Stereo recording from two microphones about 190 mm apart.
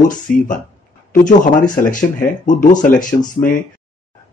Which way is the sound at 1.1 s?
45° left (ahead or behind).